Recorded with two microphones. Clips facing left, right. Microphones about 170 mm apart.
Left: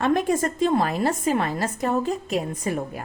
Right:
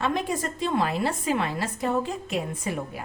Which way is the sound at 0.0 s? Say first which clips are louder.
Left 6 dB; 50° left (ahead or behind).